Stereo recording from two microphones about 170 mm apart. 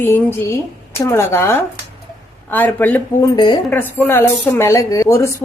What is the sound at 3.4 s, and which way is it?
Speech, 30° left (ahead or behind).